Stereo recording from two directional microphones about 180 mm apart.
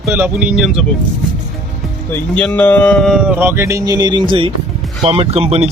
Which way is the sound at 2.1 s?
10° left (ahead or behind).